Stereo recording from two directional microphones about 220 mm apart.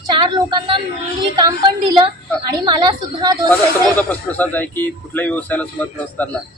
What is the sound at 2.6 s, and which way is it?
Speech, 20° right (ahead or behind).